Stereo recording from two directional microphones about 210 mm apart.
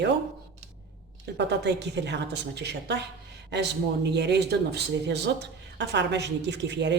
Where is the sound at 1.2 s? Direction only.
55° right (ahead or behind).